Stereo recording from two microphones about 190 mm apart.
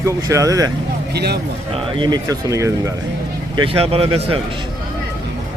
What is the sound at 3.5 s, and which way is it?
Speech, 30° right (ahead or behind).